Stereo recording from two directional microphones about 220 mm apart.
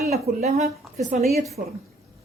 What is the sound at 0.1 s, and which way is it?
A woman's voice, 30° right (ahead or behind).